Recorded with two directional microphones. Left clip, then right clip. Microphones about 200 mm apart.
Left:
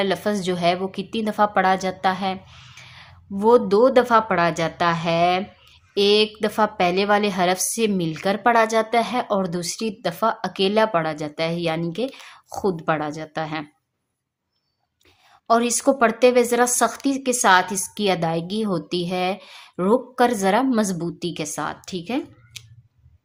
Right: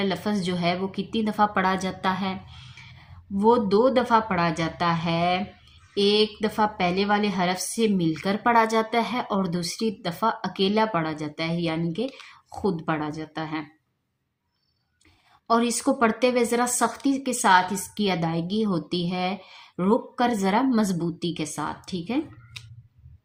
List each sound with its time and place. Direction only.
0.0 s a woman's voice: 25° left (ahead or behind)
2.6 s a woman's voice: 25° left (ahead or behind)
15.4 s a woman's voice: 25° left (ahead or behind)